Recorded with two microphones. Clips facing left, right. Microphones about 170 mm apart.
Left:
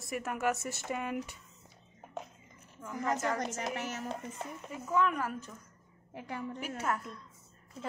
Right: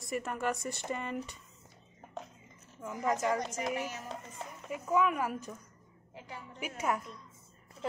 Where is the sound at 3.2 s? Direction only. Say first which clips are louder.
Right 2 dB; 10° right (ahead or behind).